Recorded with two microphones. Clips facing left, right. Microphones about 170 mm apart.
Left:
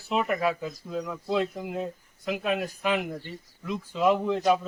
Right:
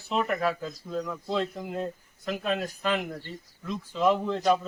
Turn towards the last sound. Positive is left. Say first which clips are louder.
# left 1 dB
turn(degrees=10)  # may be behind; listen again after turning